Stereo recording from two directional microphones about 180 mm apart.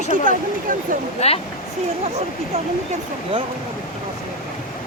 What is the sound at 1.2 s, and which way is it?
Speech, 35° left (ahead or behind).